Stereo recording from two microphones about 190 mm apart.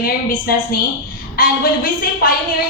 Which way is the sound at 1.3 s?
45° left (ahead or behind).